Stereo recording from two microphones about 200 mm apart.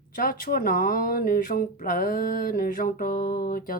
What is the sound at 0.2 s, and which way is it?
Speech, 45° left (ahead or behind).